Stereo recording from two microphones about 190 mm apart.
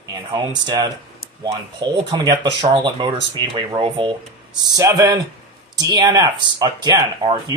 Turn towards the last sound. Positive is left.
turn(degrees=-20)  # may be behind; listen again after turning